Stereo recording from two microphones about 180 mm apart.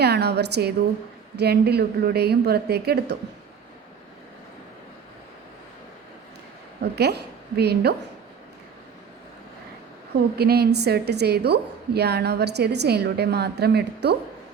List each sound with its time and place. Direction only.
0.0 s a woman's voice: 65° right (ahead or behind)
6.9 s a woman's voice: 65° right (ahead or behind)
10.3 s a woman's voice: 60° right (ahead or behind)